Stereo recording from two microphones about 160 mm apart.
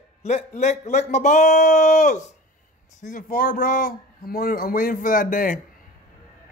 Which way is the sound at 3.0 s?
60° left (ahead or behind).